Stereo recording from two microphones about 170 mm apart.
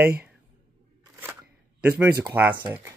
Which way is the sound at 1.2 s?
15° right (ahead or behind).